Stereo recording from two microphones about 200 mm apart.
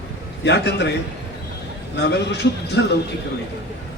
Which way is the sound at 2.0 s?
55° left (ahead or behind).